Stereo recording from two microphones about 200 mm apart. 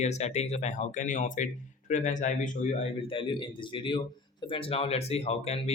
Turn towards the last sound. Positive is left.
turn(degrees=30)  # may be behind; listen again after turning